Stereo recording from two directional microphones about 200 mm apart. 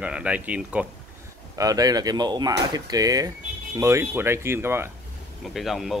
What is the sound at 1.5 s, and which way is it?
Speech, 20° right (ahead or behind).